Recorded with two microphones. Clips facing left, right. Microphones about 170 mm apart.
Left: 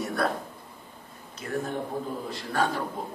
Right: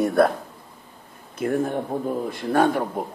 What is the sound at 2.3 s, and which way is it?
Speech, 55° right (ahead or behind).